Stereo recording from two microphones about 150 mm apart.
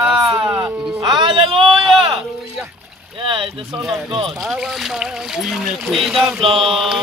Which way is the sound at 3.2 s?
35° right (ahead or behind).